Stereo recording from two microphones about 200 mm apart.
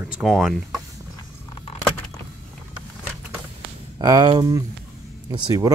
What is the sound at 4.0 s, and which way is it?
Speech, 20° right (ahead or behind).